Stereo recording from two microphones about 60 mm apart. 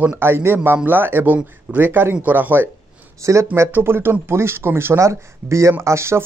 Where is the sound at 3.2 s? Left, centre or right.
Right.